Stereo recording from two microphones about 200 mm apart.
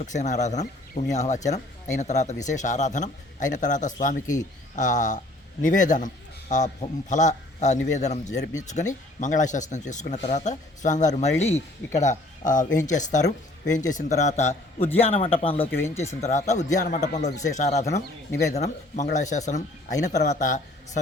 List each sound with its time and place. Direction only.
0.0 s a man's voice: 35° left (ahead or behind)
15.8 s speech: 15° left (ahead or behind)
16.2 s speech: 35° left (ahead or behind)